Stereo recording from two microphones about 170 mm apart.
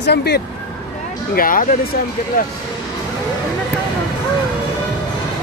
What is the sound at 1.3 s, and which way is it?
Speech, 55° left (ahead or behind).